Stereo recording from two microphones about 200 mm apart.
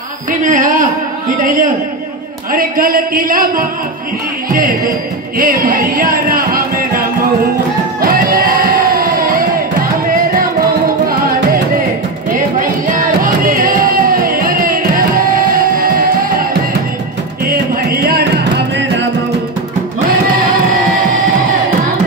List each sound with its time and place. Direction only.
0.3 s a man's voice: 40° right (ahead or behind)
5.4 s music: 45° right (ahead or behind)
13.2 s music: 45° right (ahead or behind)
17.5 s music: 50° right (ahead or behind)